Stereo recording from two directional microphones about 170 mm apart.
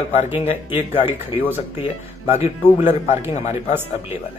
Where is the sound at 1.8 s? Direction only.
35° left (ahead or behind).